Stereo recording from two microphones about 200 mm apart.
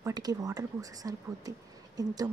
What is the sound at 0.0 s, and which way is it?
Speech, 20° right (ahead or behind).